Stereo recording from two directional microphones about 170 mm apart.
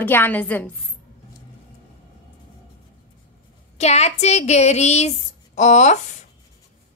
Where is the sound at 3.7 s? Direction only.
40° left (ahead or behind).